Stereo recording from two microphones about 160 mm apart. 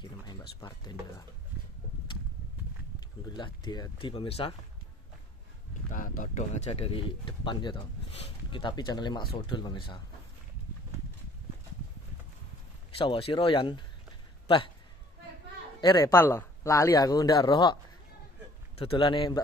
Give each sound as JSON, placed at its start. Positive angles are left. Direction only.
{"t": 0.0, "sound": "speech", "side_deg": 25}
{"t": 3.3, "sound": "speech", "side_deg": 30}
{"t": 5.9, "sound": "speech", "side_deg": 60}
{"t": 6.5, "sound": "speech", "side_deg": 40}
{"t": 12.9, "sound": "speech", "side_deg": 35}
{"t": 15.8, "sound": "speech", "side_deg": 20}
{"t": 18.8, "sound": "speech", "side_deg": 35}